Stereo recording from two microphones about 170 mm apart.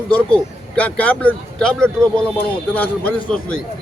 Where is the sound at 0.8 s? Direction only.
10° left (ahead or behind).